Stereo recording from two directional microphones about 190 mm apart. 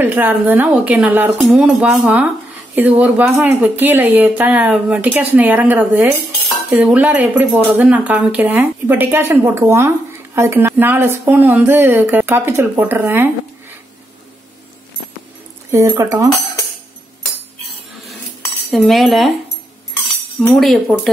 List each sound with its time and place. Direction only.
0.0 s speech: 10° right (ahead or behind)
15.7 s speech: 15° right (ahead or behind)
18.7 s speech: centre (ahead or behind)
20.3 s speech: 5° left (ahead or behind)